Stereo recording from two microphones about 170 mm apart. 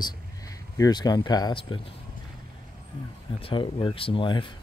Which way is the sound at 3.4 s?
30° left (ahead or behind).